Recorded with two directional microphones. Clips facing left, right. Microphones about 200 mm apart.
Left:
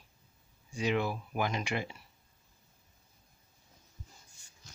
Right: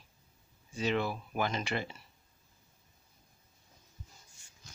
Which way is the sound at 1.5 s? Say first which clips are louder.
Even; 15° left (ahead or behind).